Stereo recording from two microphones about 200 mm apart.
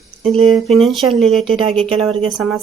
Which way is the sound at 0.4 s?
Centre (ahead or behind).